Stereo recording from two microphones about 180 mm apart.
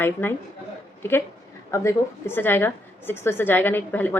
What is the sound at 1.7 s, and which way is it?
A woman's voice, 15° left (ahead or behind).